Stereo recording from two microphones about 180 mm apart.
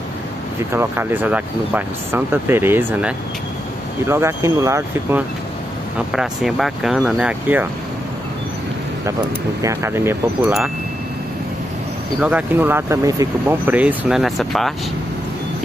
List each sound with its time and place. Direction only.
0.7 s speech: 10° right (ahead or behind)
6.1 s speech: centre (ahead or behind)
9.6 s speech: 15° right (ahead or behind)
12.2 s speech: 5° right (ahead or behind)